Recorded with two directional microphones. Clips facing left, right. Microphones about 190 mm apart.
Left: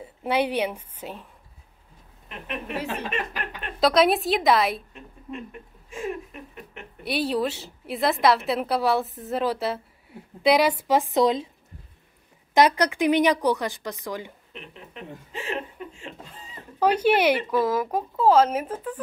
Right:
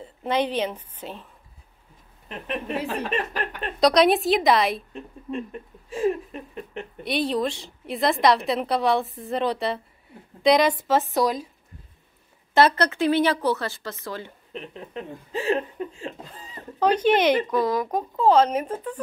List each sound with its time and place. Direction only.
0.0 s a woman's voice: 10° left (ahead or behind)
2.2 s a woman's voice: 35° right (ahead or behind)
3.8 s a woman's voice: centre (ahead or behind)
4.9 s speech: 35° right (ahead or behind)
7.0 s a woman's voice: 5° left (ahead or behind)
12.5 s a woman's voice: 15° left (ahead or behind)
14.5 s speech: 35° right (ahead or behind)
16.8 s a woman's voice: 10° left (ahead or behind)